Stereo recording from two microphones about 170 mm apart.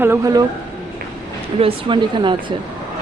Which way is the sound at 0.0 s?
15° right (ahead or behind).